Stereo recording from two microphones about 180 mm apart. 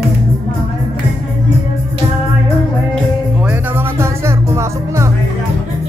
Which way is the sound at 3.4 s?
10° right (ahead or behind).